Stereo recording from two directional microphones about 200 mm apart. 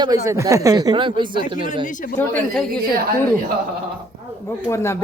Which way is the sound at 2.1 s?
5° left (ahead or behind).